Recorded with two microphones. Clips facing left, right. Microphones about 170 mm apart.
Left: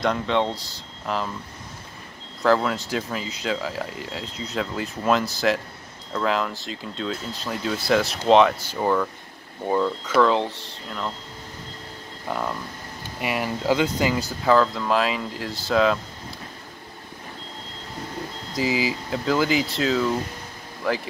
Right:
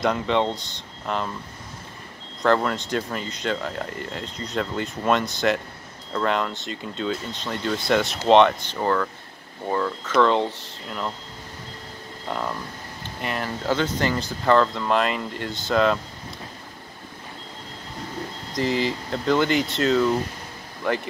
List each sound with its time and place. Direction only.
0.0 s speech: centre (ahead or behind)
2.4 s speech: 5° left (ahead or behind)
12.3 s speech: centre (ahead or behind)
18.5 s speech: 5° left (ahead or behind)